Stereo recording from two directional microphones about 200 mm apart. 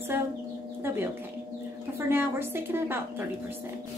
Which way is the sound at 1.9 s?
10° right (ahead or behind).